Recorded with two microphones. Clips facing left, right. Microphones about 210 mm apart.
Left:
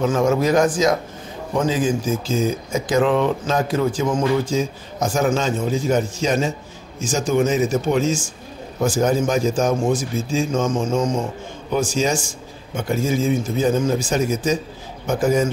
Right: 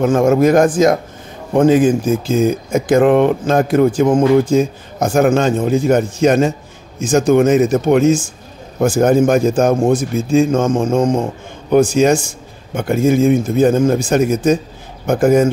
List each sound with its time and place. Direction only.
0.0 s speech: 50° right (ahead or behind)